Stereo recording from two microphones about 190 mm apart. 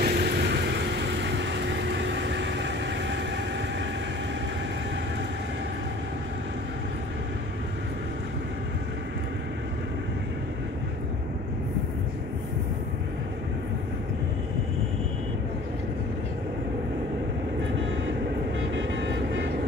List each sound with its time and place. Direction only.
0.0 s vehicle: 55° right (ahead or behind)
18.7 s vehicle: 70° right (ahead or behind)